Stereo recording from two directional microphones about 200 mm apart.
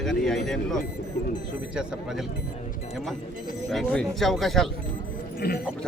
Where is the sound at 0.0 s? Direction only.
Centre (ahead or behind).